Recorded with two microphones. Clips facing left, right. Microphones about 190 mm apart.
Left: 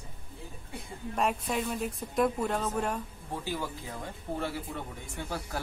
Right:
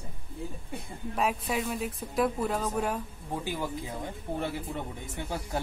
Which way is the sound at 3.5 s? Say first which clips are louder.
Right 1 dB; 15° right (ahead or behind).